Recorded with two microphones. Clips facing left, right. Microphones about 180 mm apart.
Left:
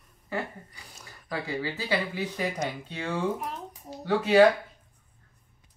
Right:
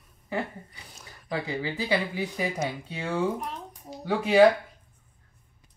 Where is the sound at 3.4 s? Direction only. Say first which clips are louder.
Left 1 dB; centre (ahead or behind).